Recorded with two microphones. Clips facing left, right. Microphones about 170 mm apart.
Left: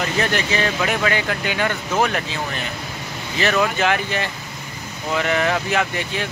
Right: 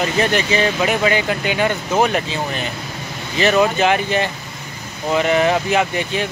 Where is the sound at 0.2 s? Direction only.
20° right (ahead or behind).